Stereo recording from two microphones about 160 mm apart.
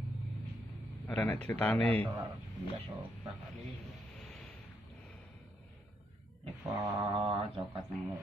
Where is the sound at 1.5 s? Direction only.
10° left (ahead or behind).